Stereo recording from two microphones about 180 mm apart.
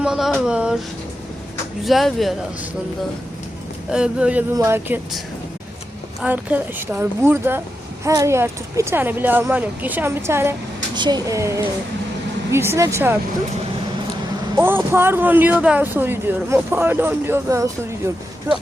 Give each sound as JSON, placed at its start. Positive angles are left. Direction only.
{"t": 0.0, "sound": "speech", "side_deg": 0}
{"t": 1.8, "sound": "speech", "side_deg": 0}
{"t": 3.9, "sound": "speech", "side_deg": -5}
{"t": 6.2, "sound": "speech", "side_deg": -10}
{"t": 10.9, "sound": "speech", "side_deg": -25}
{"t": 14.5, "sound": "speech", "side_deg": -10}